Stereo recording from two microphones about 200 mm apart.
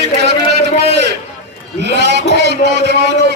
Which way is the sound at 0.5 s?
55° right (ahead or behind).